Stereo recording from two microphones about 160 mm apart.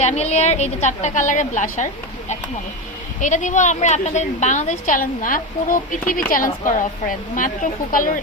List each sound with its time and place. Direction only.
0.0 s a woman's voice: 45° left (ahead or behind)
3.2 s a woman's voice: 50° left (ahead or behind)